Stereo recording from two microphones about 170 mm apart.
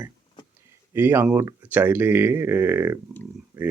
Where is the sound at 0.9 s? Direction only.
10° right (ahead or behind).